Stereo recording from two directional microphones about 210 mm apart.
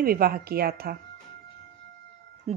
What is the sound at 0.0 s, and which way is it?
Speech, 45° right (ahead or behind).